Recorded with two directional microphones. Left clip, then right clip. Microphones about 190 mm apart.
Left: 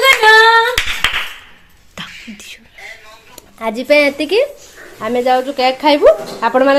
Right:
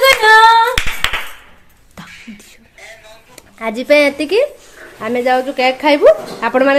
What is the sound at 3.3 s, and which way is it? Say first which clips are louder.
Speech: left 1 dB; centre (ahead or behind).